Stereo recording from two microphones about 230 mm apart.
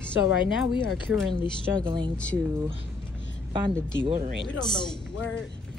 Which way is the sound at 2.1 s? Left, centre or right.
Centre.